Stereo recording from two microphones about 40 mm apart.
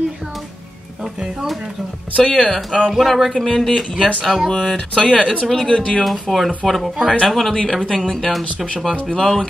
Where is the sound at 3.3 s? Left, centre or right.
Centre.